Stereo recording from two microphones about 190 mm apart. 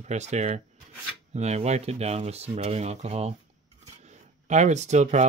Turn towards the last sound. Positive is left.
turn(degrees=-35)  # may be behind; listen again after turning